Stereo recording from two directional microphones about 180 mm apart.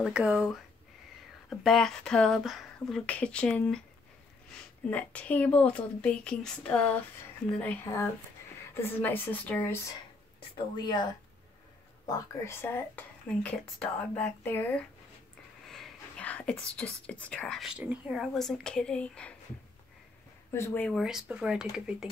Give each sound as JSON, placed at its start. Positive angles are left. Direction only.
{"t": 0.0, "sound": "speech", "side_deg": -5}
{"t": 4.8, "sound": "speech", "side_deg": 10}
{"t": 10.8, "sound": "speech", "side_deg": 25}
{"t": 12.1, "sound": "speech", "side_deg": 15}
{"t": 15.7, "sound": "speech", "side_deg": 5}
{"t": 20.5, "sound": "speech", "side_deg": 10}
{"t": 21.0, "sound": "speech", "side_deg": -5}